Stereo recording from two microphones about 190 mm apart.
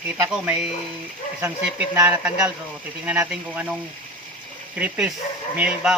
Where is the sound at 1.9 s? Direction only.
10° right (ahead or behind).